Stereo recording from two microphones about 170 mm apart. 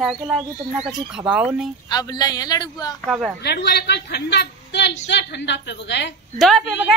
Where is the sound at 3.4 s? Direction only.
80° left.